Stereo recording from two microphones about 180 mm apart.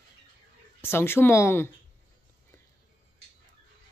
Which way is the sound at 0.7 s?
15° left (ahead or behind).